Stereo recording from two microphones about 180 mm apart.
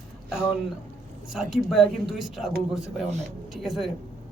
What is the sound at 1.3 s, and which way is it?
A man's voice, centre (ahead or behind).